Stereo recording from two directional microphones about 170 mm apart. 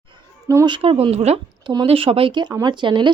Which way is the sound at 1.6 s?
25° right (ahead or behind).